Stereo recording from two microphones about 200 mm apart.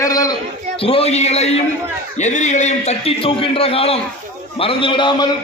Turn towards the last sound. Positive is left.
turn(degrees=25)  # may be behind; listen again after turning